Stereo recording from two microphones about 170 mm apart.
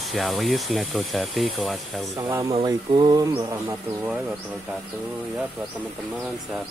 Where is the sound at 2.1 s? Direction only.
20° right (ahead or behind).